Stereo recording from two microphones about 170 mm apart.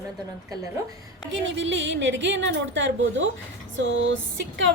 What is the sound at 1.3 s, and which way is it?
A woman's voice, 90° right.